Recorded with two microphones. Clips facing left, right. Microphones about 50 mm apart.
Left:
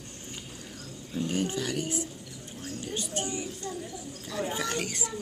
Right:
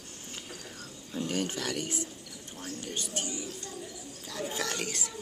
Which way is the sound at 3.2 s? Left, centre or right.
Left.